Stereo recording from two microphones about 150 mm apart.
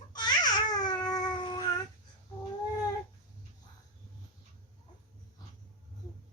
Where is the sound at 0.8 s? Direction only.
30° left (ahead or behind).